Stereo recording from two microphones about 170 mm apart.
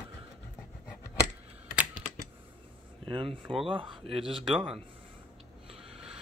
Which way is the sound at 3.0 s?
30° right (ahead or behind).